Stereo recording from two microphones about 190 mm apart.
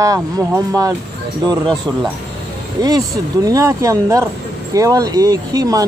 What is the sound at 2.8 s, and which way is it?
Speech, 20° right (ahead or behind).